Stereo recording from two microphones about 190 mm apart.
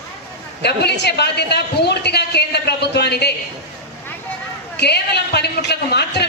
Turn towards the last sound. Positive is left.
turn(degrees=60)  # may be behind; listen again after turning